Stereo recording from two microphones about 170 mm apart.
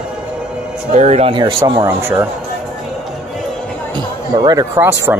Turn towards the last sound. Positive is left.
turn(degrees=-10)  # may be behind; listen again after turning